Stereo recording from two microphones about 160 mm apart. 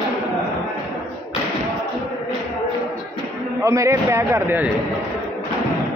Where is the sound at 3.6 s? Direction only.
20° right (ahead or behind).